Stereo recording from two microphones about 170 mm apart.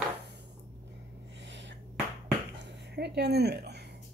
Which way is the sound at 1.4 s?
90° right.